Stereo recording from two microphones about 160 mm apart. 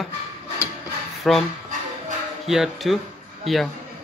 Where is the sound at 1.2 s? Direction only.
Centre (ahead or behind).